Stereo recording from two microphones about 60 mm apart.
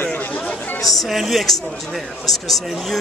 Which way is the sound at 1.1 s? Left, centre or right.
Centre.